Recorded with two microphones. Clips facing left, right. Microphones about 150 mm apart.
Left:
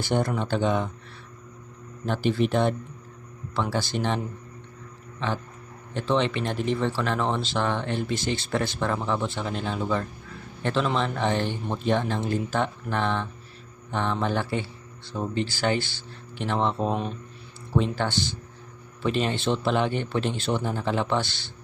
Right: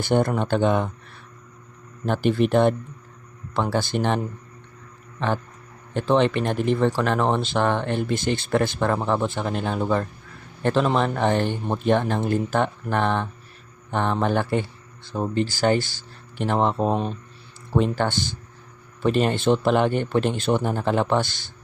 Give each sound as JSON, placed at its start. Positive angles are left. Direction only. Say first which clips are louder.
{"t": 0.0, "sound": "speech", "louder": "right 4 dB", "side_deg": -55}
{"t": 2.0, "sound": "speech", "louder": "right 4 dB", "side_deg": -50}
{"t": 5.9, "sound": "speech", "louder": "right 5 dB", "side_deg": -50}
{"t": 17.7, "sound": "speech", "louder": "right 3 dB", "side_deg": -50}